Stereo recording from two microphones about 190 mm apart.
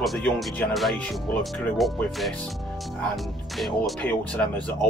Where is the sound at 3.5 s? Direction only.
Centre (ahead or behind).